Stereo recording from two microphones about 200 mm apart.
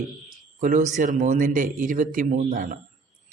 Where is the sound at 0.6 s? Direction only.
40° right (ahead or behind).